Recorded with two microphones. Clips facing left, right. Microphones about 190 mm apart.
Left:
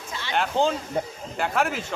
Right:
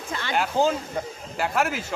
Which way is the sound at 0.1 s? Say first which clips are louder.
Right 4 dB; 55° right (ahead or behind).